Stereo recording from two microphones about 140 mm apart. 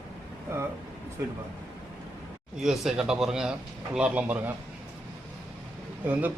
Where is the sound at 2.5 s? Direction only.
5° right (ahead or behind).